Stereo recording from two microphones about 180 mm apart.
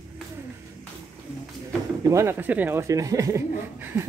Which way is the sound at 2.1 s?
15° right (ahead or behind).